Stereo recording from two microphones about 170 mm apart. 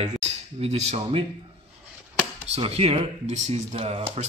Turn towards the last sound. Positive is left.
turn(degrees=-40)  # may be behind; listen again after turning